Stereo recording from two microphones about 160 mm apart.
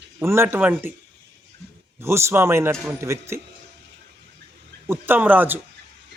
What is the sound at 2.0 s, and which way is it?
A man's voice, 15° right (ahead or behind).